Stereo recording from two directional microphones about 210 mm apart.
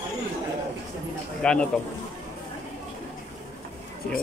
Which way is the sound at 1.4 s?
5° left (ahead or behind).